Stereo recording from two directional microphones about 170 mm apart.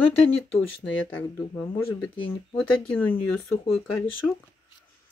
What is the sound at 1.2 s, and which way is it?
Speech, 10° left (ahead or behind).